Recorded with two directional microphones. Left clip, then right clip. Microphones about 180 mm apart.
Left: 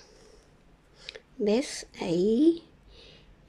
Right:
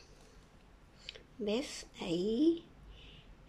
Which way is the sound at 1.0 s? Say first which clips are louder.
Left 11 dB; 30° left (ahead or behind).